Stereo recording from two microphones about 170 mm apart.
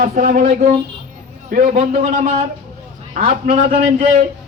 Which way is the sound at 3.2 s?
40° right (ahead or behind).